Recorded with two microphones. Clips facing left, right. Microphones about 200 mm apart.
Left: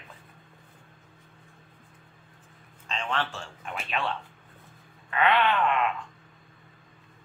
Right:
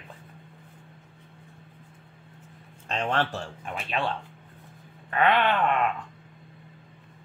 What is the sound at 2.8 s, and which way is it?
Speech, 40° right (ahead or behind).